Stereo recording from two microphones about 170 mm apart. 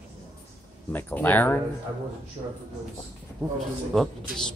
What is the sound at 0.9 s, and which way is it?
Speech, 10° left (ahead or behind).